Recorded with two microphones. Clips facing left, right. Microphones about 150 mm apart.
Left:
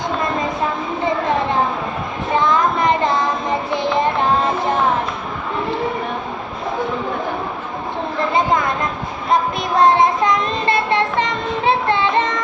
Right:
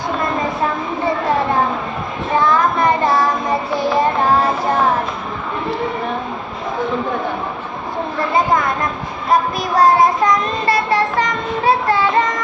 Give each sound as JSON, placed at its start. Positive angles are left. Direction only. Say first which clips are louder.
{"t": 2.4, "sound": "child singing", "louder": "right 2 dB", "side_deg": 20}
{"t": 9.3, "sound": "child singing", "louder": "right 1 dB", "side_deg": 25}